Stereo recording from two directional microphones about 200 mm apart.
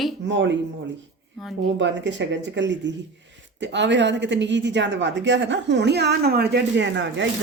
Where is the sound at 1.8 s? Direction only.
65° right (ahead or behind).